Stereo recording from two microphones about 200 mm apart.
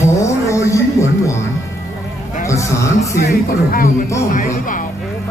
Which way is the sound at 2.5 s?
15° left (ahead or behind).